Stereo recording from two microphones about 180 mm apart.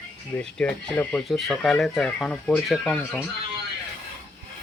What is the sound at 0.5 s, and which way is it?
Speech, 5° left (ahead or behind).